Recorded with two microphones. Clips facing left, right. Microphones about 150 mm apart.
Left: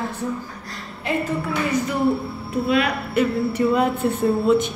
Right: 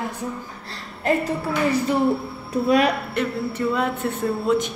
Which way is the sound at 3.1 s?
15° left (ahead or behind).